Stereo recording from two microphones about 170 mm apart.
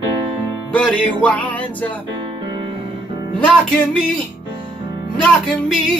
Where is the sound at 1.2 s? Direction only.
10° left (ahead or behind).